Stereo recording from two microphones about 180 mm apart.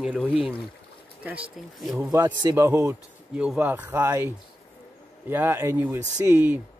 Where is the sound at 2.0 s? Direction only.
20° right (ahead or behind).